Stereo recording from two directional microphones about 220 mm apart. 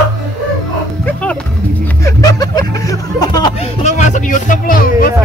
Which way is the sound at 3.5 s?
30° left (ahead or behind).